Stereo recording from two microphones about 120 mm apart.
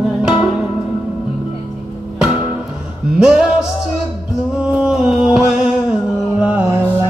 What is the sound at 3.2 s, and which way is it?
Music, 5° right (ahead or behind).